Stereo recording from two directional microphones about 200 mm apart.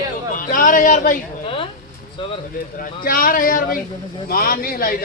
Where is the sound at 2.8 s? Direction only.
45° left (ahead or behind).